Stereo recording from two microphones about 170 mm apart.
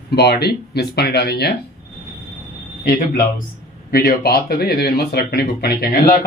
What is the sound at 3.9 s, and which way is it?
Speech, 65° left (ahead or behind).